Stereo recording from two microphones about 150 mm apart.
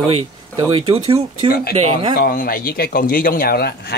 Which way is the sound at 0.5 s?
30° right (ahead or behind).